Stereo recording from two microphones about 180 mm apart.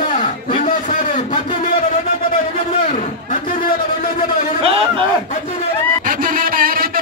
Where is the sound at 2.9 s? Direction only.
45° left (ahead or behind).